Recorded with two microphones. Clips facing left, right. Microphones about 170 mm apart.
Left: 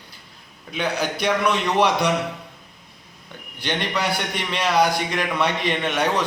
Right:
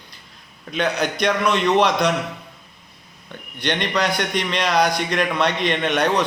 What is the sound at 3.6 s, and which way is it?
A man's voice, 10° left (ahead or behind).